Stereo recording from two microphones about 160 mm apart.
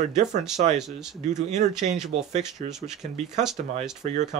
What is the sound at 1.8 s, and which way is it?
Speech, 45° right (ahead or behind).